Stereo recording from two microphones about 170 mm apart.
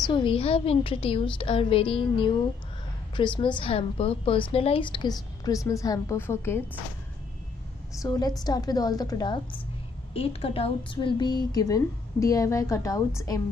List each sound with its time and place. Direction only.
0.1 s a woman's voice: 30° left (ahead or behind); by 6.6 s 15° left (ahead or behind)
8.0 s a woman's voice: 20° left (ahead or behind)